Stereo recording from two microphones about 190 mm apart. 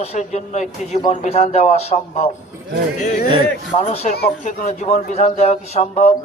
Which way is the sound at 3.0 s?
45° left (ahead or behind).